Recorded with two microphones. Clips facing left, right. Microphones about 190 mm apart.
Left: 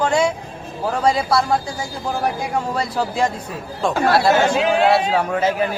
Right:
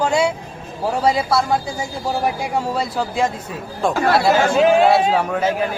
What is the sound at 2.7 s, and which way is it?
A man's voice, centre (ahead or behind).